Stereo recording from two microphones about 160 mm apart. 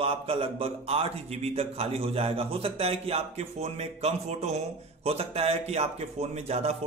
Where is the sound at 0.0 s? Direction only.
35° right (ahead or behind).